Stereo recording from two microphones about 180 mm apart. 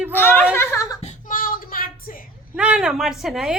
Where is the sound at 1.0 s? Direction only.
45° left (ahead or behind).